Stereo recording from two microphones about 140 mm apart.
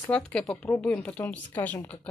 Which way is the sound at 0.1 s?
10° left (ahead or behind).